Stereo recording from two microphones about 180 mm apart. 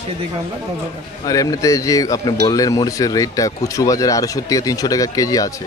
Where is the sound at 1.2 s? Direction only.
20° left (ahead or behind).